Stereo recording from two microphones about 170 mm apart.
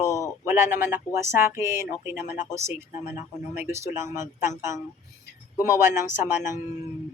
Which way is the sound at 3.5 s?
15° right (ahead or behind).